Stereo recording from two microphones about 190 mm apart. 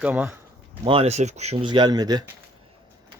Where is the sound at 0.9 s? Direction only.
30° right (ahead or behind).